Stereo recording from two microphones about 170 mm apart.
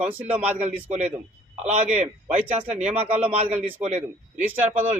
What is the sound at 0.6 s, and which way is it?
Speech, 40° right (ahead or behind).